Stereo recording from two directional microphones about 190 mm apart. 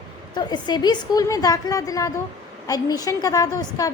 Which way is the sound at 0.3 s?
20° left (ahead or behind).